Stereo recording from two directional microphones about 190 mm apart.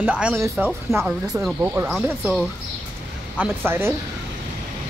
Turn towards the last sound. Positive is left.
turn(degrees=-10)  # may be behind; listen again after turning